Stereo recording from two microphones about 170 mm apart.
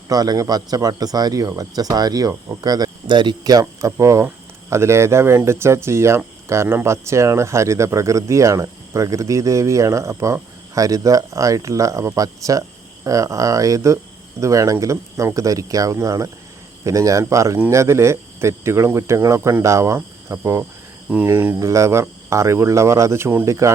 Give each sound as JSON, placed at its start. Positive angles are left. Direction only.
{"t": 0.1, "sound": "speech", "side_deg": -20}